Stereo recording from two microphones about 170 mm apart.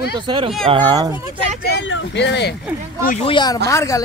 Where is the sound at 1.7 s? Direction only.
85° left.